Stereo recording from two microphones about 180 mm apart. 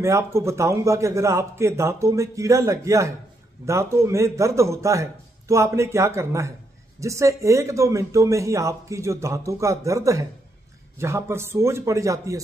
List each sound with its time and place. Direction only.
0.0 s speech: 15° right (ahead or behind)